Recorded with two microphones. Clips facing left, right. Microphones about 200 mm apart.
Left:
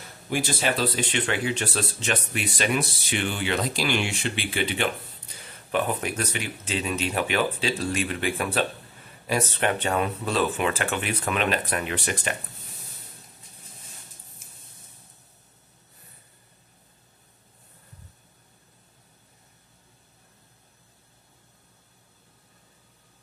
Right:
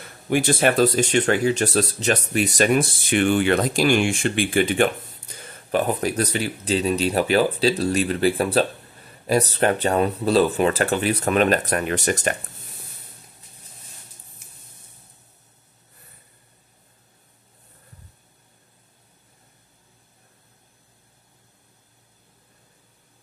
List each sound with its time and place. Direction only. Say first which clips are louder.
0.3 s speech: right 7 dB; 55° right (ahead or behind)